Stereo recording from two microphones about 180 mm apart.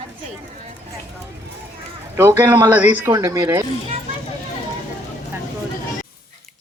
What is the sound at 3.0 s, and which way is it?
Speech, 20° right (ahead or behind).